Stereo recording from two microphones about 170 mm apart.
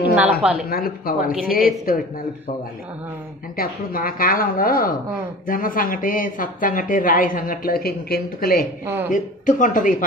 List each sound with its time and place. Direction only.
0.1 s a woman's voice: 5° right (ahead or behind)
0.7 s speech: 60° left (ahead or behind)
3.5 s speech: 60° left (ahead or behind)
8.8 s speech: 15° right (ahead or behind)
9.1 s speech: 50° left (ahead or behind)